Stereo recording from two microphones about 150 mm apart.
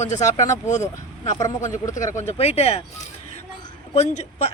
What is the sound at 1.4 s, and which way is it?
Speech, 25° left (ahead or behind).